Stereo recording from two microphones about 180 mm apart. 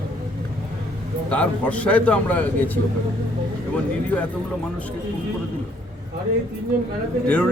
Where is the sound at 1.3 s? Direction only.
5° left (ahead or behind).